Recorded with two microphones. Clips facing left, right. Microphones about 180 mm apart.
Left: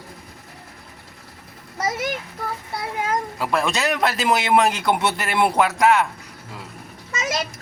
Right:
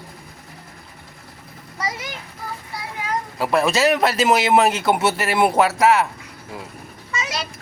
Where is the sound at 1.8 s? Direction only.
50° left (ahead or behind).